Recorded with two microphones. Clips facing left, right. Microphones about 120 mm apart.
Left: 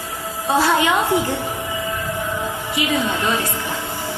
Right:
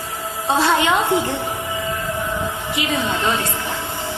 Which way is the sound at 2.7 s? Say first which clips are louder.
Left 2 dB; 25° right (ahead or behind).